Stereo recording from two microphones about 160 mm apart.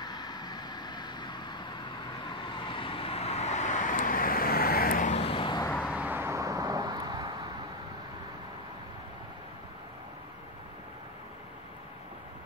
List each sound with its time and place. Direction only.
0.0 s vehicle: 25° left (ahead or behind); by 5.2 s 55° left (ahead or behind)
5.2 s vehicle: 30° left (ahead or behind)
5.9 s vehicle: 10° right (ahead or behind)